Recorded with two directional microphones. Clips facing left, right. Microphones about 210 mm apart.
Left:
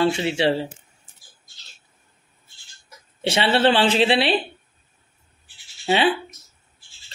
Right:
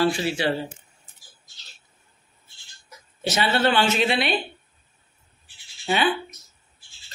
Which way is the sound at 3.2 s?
30° left (ahead or behind).